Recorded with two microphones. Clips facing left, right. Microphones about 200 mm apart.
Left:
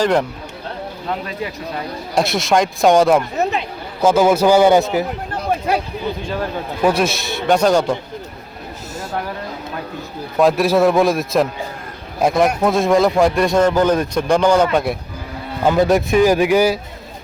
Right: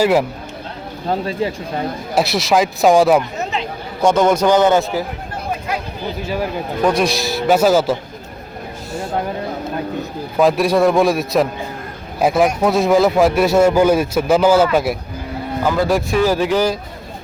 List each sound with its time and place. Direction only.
0.0 s speech: 5° right (ahead or behind)
1.0 s speech: 30° right (ahead or behind)
2.1 s a man's voice: centre (ahead or behind); by 5.0 s 15° left (ahead or behind)
6.2 s speech: 10° right (ahead or behind)
6.8 s a man's voice: 5° left (ahead or behind)
10.3 s a man's voice: centre (ahead or behind)
15.6 s a man's voice: 25° left (ahead or behind)